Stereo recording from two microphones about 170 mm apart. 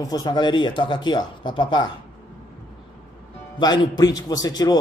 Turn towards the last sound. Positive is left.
turn(degrees=20)  # may be behind; listen again after turning